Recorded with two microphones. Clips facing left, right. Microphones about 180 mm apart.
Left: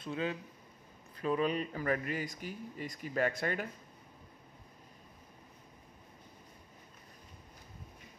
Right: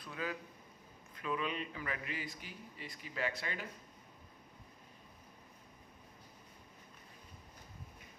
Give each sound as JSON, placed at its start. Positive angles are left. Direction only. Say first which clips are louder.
{"t": 0.0, "sound": "speech", "louder": "left 6 dB", "side_deg": 25}
{"t": 1.1, "sound": "a man's voice", "louder": "left 7 dB", "side_deg": 40}